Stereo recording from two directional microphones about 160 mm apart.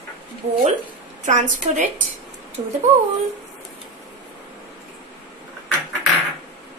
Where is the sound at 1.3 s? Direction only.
50° right (ahead or behind).